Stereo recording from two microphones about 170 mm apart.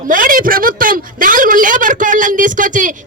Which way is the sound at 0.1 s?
55° right (ahead or behind).